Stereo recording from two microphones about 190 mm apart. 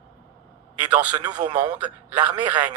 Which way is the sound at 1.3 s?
20° right (ahead or behind).